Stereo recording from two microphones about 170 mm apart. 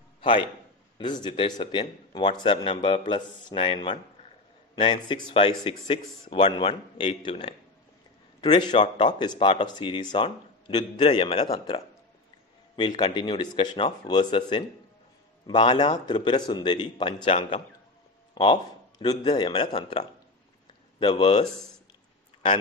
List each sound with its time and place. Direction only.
0.2 s a man's voice: 30° left (ahead or behind)